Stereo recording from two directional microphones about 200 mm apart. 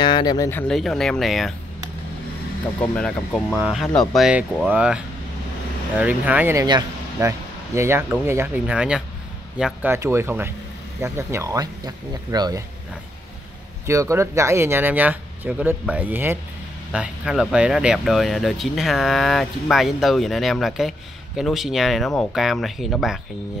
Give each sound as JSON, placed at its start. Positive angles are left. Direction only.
{"t": 0.0, "sound": "speech", "side_deg": 20}
{"t": 0.5, "sound": "speech", "side_deg": 5}
{"t": 2.8, "sound": "speech", "side_deg": 5}
{"t": 13.8, "sound": "speech", "side_deg": -15}